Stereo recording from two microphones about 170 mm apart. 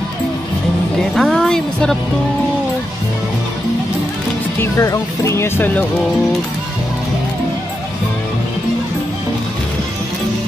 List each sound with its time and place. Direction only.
1.1 s music: centre (ahead or behind)
4.6 s speech: 20° left (ahead or behind)